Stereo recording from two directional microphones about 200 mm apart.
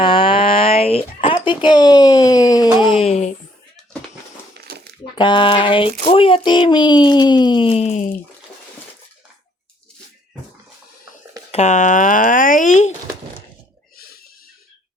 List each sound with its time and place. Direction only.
0.0 s a sound: 25° left (ahead or behind)
1.5 s speech: 20° left (ahead or behind)
4.5 s crumpling: 55° right (ahead or behind)
5.1 s speech: 25° left (ahead or behind)
11.5 s speech: 35° left (ahead or behind)
13.9 s a sound: 50° left (ahead or behind)